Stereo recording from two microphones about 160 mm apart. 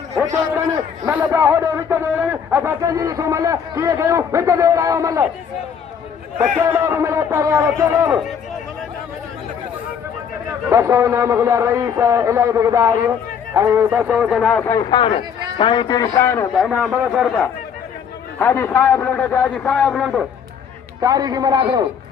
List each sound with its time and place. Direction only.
1.0 s a man's voice: 10° right (ahead or behind)
6.4 s a man's voice: 15° right (ahead or behind)
10.7 s a man's voice: 20° right (ahead or behind); by 14.7 s 10° left (ahead or behind)
14.7 s a man's voice: 25° left (ahead or behind)
16.6 s a man's voice: 5° right (ahead or behind)
18.3 s a man's voice: 15° left (ahead or behind)
21.0 s a man's voice: 25° right (ahead or behind)